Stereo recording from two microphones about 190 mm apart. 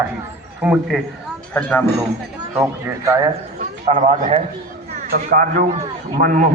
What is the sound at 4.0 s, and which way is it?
Speech, 35° right (ahead or behind).